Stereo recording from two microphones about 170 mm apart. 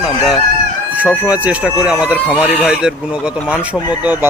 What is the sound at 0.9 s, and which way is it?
Speech, 10° right (ahead or behind).